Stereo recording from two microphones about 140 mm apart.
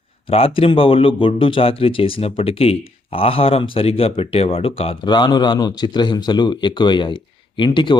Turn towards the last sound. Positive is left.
turn(degrees=35)  # may be behind; listen again after turning